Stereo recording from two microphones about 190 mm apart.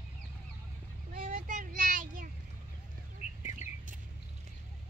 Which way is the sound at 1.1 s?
40° right (ahead or behind).